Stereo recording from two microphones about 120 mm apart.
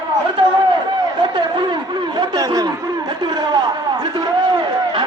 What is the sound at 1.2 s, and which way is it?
Speech, 40° right (ahead or behind).